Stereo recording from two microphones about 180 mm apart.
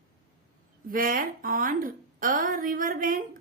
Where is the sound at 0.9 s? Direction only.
50° right (ahead or behind).